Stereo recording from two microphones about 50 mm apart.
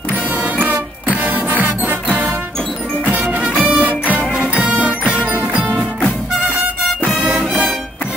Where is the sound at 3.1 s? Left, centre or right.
Right.